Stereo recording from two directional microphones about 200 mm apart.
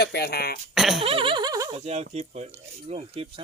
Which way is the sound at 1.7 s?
35° right (ahead or behind).